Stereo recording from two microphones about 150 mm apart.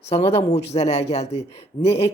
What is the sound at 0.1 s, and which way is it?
Speech, 45° left (ahead or behind).